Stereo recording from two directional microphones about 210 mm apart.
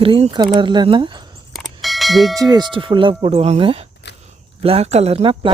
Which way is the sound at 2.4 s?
20° right (ahead or behind).